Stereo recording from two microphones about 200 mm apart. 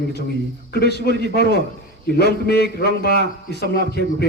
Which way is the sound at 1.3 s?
55° left (ahead or behind).